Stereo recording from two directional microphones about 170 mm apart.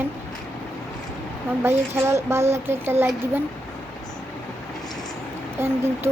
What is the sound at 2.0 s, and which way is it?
A woman's voice, 15° right (ahead or behind).